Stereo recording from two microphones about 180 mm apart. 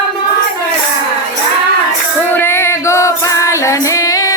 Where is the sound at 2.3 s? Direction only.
10° left (ahead or behind).